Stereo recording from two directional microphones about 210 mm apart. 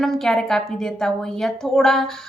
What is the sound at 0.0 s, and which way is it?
A woman's voice, centre (ahead or behind).